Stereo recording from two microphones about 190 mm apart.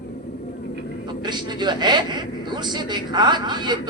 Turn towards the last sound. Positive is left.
turn(degrees=-25)  # may be behind; listen again after turning